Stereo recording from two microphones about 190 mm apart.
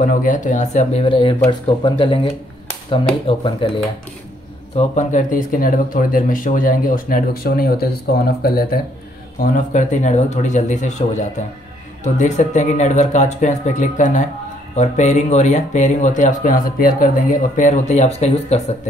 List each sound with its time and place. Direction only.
0.0 s speech: 45° left (ahead or behind); by 3.8 s 25° left (ahead or behind)
4.7 s speech: 40° left (ahead or behind)